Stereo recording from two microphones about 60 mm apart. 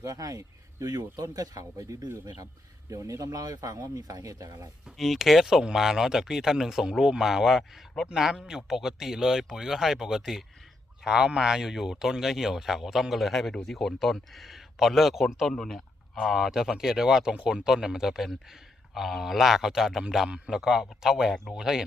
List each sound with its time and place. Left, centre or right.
0.0 s speech: right
2.9 s speech: right
3.8 s speech: right
4.9 s speech: centre
15.5 s speech: centre
16.2 s speech: centre